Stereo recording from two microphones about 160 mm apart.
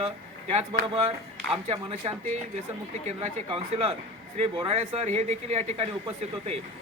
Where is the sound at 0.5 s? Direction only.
35° right (ahead or behind).